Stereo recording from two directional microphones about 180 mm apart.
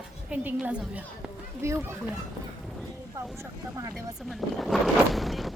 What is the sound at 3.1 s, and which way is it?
Speech, 20° right (ahead or behind).